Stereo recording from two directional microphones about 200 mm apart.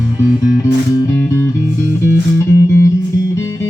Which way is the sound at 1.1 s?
10° left (ahead or behind).